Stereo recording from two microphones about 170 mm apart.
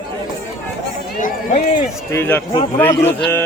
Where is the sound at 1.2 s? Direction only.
45° left (ahead or behind).